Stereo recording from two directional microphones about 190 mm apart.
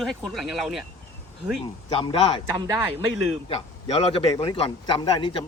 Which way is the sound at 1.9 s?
30° left (ahead or behind).